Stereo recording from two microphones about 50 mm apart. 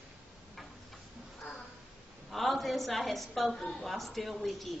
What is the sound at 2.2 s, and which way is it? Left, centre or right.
A woman's voice, centre.